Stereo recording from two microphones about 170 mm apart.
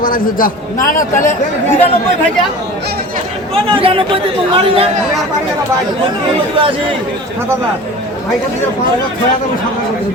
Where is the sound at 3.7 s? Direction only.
30° right (ahead or behind).